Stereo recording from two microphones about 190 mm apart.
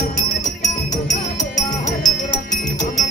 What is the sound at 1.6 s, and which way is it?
Music, 40° left (ahead or behind).